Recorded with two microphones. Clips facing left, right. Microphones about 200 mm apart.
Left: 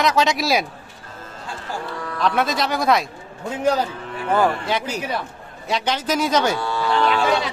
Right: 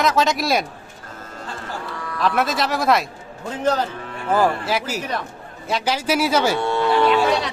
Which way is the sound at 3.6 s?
10° left (ahead or behind).